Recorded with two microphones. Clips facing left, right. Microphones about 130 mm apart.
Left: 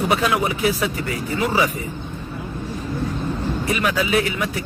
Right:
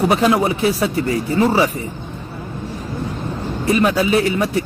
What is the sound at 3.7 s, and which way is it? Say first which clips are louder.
Speech: right 6 dB; 35° right (ahead or behind).